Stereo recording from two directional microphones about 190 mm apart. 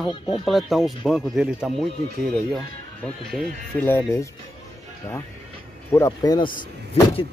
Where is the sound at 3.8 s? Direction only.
10° left (ahead or behind).